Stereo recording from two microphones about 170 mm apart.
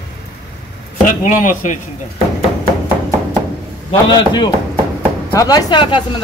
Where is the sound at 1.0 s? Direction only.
50° left (ahead or behind).